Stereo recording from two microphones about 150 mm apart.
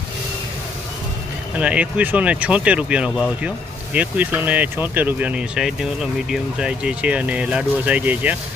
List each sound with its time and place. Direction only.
1.5 s speech: 10° right (ahead or behind)